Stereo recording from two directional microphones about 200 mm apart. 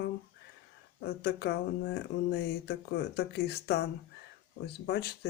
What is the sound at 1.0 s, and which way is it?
Speech, 55° left (ahead or behind).